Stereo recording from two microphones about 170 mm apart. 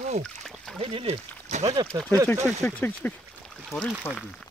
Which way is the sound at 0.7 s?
35° right (ahead or behind).